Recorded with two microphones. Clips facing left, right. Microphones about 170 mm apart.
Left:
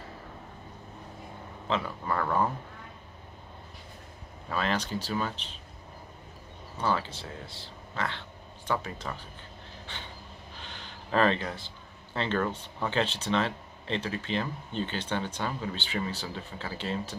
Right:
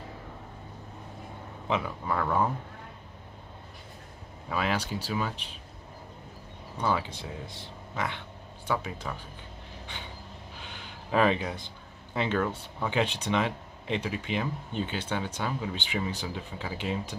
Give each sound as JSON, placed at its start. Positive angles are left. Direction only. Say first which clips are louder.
{"t": 1.7, "sound": "speech", "louder": "right 1 dB", "side_deg": -5}
{"t": 4.5, "sound": "speech", "louder": "even", "side_deg": -10}
{"t": 6.8, "sound": "speech", "louder": "right 1 dB", "side_deg": -10}
{"t": 10.6, "sound": "a sound", "louder": "right 1 dB", "side_deg": -10}
{"t": 12.5, "sound": "speech", "louder": "right 1 dB", "side_deg": -10}